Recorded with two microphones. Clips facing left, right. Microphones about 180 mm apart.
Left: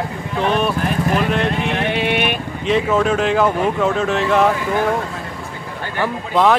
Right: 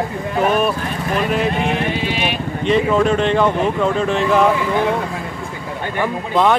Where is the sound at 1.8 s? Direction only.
65° left (ahead or behind).